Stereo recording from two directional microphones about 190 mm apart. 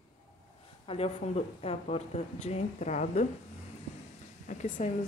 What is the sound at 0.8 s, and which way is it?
Speech, 30° left (ahead or behind).